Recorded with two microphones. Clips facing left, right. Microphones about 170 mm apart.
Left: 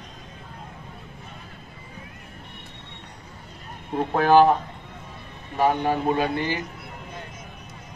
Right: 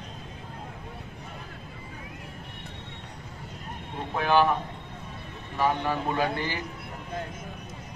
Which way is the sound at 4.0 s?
40° left (ahead or behind).